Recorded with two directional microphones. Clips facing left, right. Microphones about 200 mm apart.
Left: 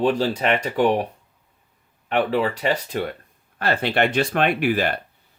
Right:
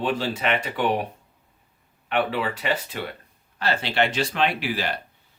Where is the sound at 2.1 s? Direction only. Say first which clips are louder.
Left 4 dB; 40° left (ahead or behind).